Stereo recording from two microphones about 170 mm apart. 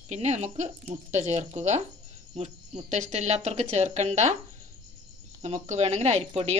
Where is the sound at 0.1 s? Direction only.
40° right (ahead or behind).